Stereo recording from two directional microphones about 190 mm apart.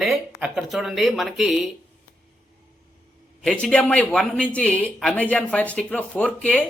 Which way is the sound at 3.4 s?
5° left (ahead or behind).